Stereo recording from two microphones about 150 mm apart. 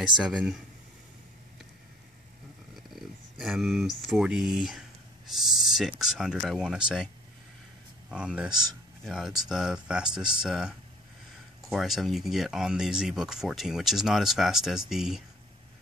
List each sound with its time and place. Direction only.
0.2 s speech: centre (ahead or behind)
2.7 s speech: centre (ahead or behind)
8.1 s speech: 5° right (ahead or behind)
8.5 s speech: 25° right (ahead or behind)
9.0 s speech: 5° right (ahead or behind)